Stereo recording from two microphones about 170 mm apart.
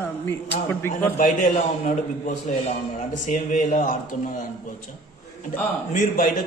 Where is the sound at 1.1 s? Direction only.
50° left (ahead or behind).